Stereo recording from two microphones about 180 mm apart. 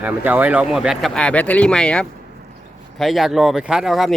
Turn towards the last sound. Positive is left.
turn(degrees=0)  # may be behind; listen again after turning